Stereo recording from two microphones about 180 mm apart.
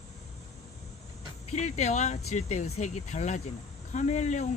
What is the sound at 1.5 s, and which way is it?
Speech, 40° left (ahead or behind).